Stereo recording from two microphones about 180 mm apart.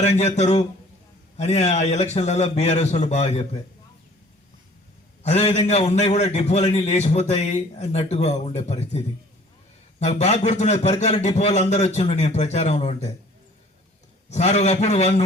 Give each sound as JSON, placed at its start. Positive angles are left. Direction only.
{"t": 0.0, "sound": "a man's voice", "side_deg": 40}
{"t": 5.2, "sound": "a man's voice", "side_deg": 40}
{"t": 14.3, "sound": "a man's voice", "side_deg": 40}